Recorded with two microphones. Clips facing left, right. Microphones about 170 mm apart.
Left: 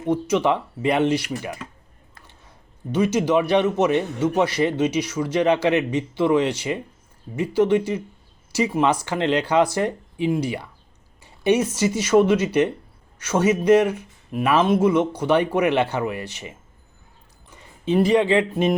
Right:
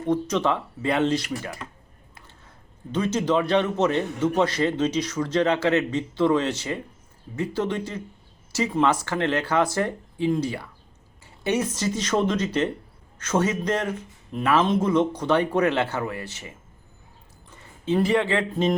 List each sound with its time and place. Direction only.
0.0 s a man's voice: 10° left (ahead or behind)
2.9 s a man's voice: 10° left (ahead or behind)